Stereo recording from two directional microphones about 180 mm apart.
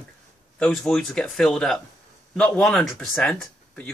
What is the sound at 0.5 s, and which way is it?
Speech, 5° left (ahead or behind).